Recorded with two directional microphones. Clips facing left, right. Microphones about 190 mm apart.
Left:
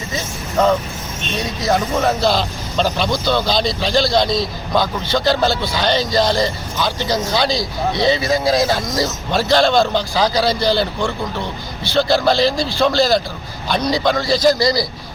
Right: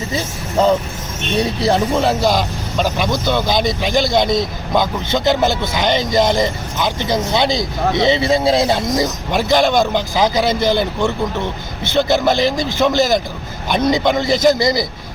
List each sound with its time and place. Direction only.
1.4 s speech: 30° right (ahead or behind)
2.0 s a man's voice: 15° right (ahead or behind)